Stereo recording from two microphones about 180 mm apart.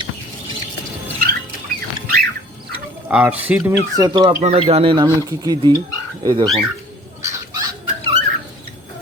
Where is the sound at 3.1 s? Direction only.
10° right (ahead or behind).